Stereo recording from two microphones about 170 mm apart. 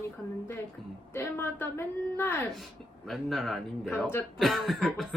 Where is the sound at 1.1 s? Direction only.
15° left (ahead or behind).